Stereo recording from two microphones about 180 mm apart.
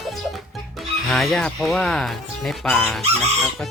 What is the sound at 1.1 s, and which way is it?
Speech, centre (ahead or behind).